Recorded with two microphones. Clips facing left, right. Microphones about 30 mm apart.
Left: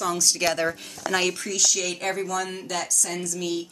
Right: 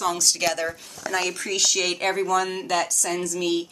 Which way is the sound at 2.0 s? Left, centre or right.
Right.